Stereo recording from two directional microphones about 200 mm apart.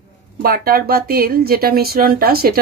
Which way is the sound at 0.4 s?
45° right (ahead or behind).